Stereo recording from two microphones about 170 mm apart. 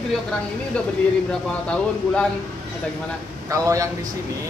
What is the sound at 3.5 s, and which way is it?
Speech, 20° right (ahead or behind).